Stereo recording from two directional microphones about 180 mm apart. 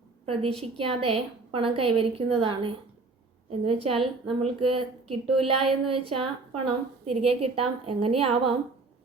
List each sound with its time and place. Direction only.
0.6 s speech: 30° right (ahead or behind)